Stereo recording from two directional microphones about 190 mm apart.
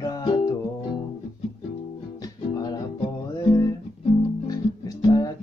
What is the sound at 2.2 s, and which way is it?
Music, 20° left (ahead or behind).